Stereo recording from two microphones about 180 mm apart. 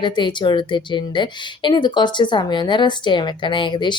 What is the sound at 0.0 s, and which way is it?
Speech, 25° left (ahead or behind).